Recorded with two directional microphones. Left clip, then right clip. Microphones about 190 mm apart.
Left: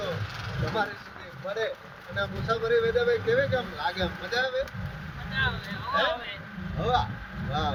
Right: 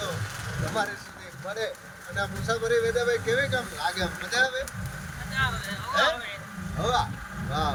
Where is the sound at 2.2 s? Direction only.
20° right (ahead or behind).